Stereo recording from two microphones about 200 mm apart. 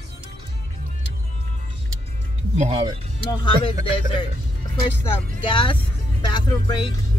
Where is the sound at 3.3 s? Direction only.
20° left (ahead or behind).